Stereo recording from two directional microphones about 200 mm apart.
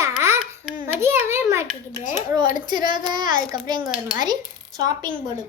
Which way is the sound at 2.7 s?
20° right (ahead or behind).